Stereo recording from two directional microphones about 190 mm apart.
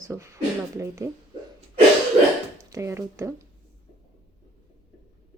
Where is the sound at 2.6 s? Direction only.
15° right (ahead or behind).